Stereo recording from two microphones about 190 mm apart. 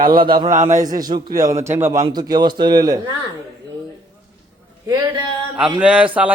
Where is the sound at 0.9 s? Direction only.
20° right (ahead or behind).